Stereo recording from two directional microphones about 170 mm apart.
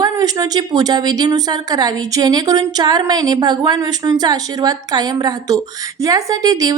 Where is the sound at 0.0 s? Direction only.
20° right (ahead or behind).